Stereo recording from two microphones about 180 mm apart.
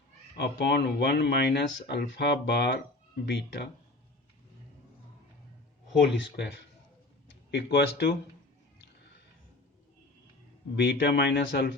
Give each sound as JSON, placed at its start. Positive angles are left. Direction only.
{"t": 0.3, "sound": "speech", "side_deg": 65}
{"t": 6.1, "sound": "speech", "side_deg": 70}
{"t": 7.5, "sound": "speech", "side_deg": 70}
{"t": 10.8, "sound": "speech", "side_deg": 65}